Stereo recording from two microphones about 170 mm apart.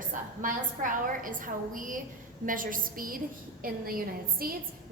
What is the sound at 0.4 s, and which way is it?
A woman's voice, 50° right (ahead or behind).